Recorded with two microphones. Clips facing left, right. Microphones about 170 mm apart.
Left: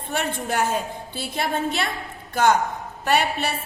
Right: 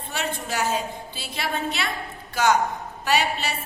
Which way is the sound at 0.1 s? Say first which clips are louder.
Left 4 dB; 55° left (ahead or behind).